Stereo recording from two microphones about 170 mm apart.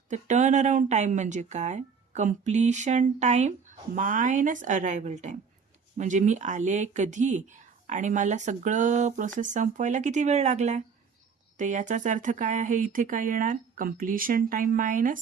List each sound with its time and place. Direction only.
0.1 s speech: 45° right (ahead or behind)